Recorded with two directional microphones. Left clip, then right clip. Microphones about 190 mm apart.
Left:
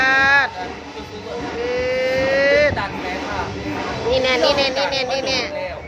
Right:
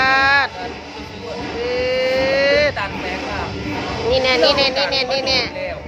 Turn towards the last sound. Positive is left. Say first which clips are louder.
# right 2 dB
turn(degrees=0)  # may be behind; listen again after turning